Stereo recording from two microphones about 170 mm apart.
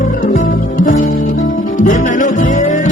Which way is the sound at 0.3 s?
50° left (ahead or behind).